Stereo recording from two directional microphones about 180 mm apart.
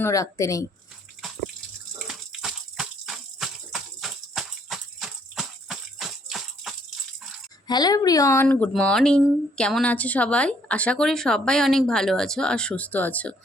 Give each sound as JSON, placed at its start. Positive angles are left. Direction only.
{"t": 0.0, "sound": "speech", "side_deg": 15}
{"t": 2.0, "sound": "a sound", "side_deg": 0}
{"t": 7.7, "sound": "speech", "side_deg": 20}